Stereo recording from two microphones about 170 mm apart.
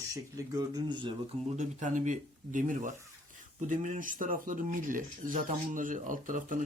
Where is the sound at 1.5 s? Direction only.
45° right (ahead or behind).